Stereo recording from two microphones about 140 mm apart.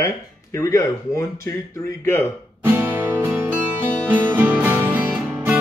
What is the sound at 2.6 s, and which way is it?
Music, 10° right (ahead or behind).